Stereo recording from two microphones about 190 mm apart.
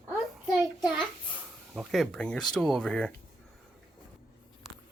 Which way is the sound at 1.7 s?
Centre (ahead or behind).